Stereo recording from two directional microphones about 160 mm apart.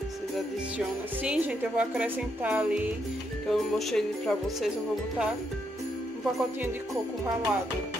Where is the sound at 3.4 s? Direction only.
Centre (ahead or behind).